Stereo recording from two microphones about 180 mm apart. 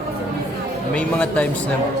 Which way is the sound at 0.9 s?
5° left (ahead or behind).